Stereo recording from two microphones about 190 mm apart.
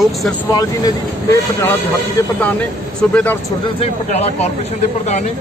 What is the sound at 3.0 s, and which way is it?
Speech, 5° left (ahead or behind).